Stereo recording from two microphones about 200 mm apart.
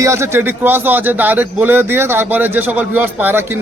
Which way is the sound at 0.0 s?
15° right (ahead or behind).